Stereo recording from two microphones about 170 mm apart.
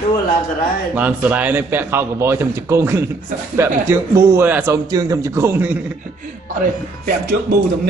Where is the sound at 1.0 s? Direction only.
10° right (ahead or behind).